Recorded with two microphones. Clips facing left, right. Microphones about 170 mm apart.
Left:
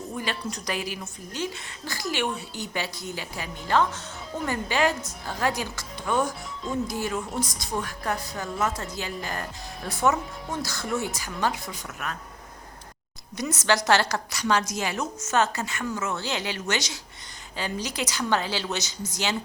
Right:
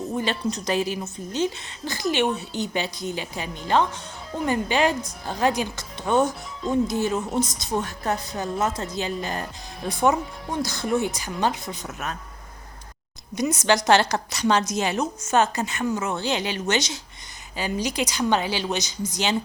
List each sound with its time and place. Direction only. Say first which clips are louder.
0.2 s a woman's voice: right 5 dB; 25° right (ahead or behind)
13.3 s a woman's voice: right 4 dB; 15° right (ahead or behind)